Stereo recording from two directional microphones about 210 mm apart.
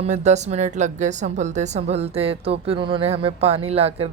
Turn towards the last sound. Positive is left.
turn(degrees=-30)  # may be behind; listen again after turning